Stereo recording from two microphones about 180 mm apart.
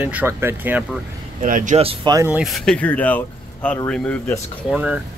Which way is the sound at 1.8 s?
30° right (ahead or behind).